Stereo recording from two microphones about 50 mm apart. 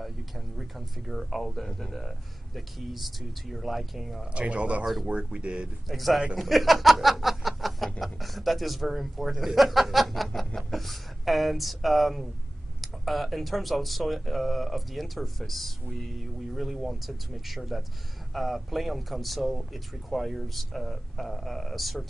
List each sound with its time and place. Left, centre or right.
0.6 s speech: centre
4.2 s speech: right
5.9 s speech: centre